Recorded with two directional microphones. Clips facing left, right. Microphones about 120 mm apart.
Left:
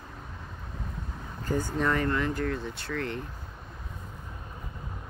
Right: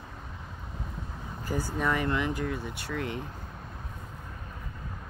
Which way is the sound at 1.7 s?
10° right (ahead or behind).